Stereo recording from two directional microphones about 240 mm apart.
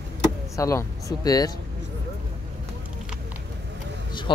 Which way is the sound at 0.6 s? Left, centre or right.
Centre.